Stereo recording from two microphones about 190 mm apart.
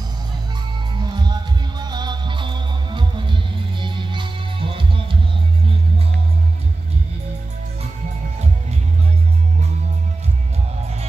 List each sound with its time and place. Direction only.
1.0 s music: 20° right (ahead or behind)